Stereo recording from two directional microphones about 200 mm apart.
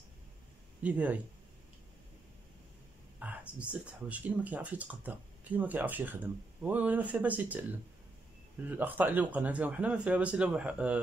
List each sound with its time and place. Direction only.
0.8 s speech: 5° right (ahead or behind)
3.2 s speech: 5° right (ahead or behind)
8.6 s speech: 10° right (ahead or behind)